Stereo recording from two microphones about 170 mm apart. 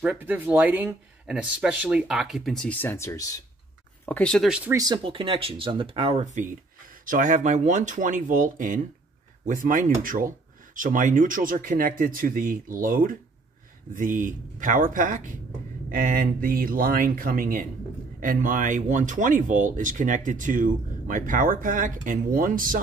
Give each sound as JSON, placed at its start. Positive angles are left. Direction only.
{"t": 0.0, "sound": "speech", "side_deg": -10}
{"t": 4.0, "sound": "speech", "side_deg": 5}
{"t": 4.5, "sound": "speech", "side_deg": -5}
{"t": 4.7, "sound": "speech", "side_deg": -25}
{"t": 6.2, "sound": "speech", "side_deg": -50}